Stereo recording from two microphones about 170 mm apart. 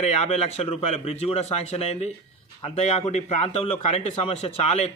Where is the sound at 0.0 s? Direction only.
40° left (ahead or behind).